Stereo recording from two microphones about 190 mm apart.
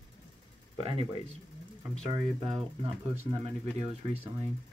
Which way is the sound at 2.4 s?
30° right (ahead or behind).